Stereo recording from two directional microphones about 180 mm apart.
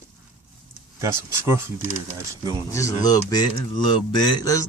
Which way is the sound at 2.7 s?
15° left (ahead or behind).